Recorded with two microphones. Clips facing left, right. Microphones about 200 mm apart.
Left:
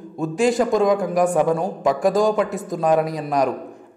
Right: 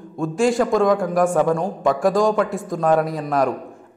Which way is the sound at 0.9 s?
20° left (ahead or behind).